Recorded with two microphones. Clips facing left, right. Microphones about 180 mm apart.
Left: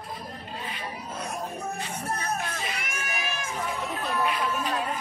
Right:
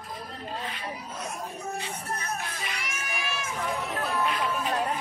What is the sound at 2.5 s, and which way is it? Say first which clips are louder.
Music: left 2 dB; 55° left (ahead or behind).